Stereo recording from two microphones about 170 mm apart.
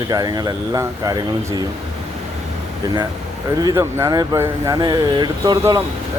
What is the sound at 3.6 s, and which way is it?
Speech, 20° right (ahead or behind).